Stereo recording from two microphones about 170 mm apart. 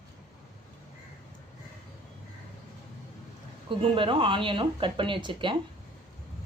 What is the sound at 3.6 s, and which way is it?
Speech, 30° right (ahead or behind).